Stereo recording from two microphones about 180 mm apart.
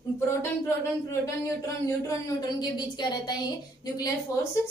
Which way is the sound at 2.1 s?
20° left (ahead or behind).